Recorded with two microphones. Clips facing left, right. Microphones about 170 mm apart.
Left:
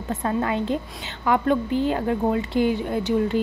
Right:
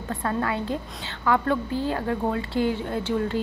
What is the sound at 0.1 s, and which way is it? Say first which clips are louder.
A woman's voice: left 3 dB; 20° left (ahead or behind).